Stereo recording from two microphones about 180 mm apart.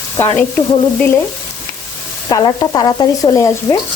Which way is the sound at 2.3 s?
25° left (ahead or behind).